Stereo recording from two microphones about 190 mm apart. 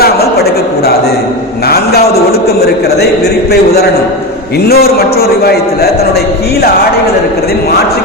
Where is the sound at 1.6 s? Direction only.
55° left (ahead or behind).